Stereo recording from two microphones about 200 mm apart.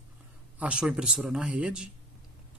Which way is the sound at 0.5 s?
5° right (ahead or behind).